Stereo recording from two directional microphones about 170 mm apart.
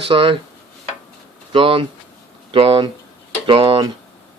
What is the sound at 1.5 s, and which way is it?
Speech, 30° right (ahead or behind).